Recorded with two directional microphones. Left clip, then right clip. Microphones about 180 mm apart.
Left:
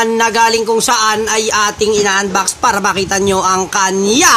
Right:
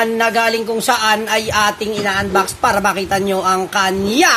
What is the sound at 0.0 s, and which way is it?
Speech, 60° left (ahead or behind).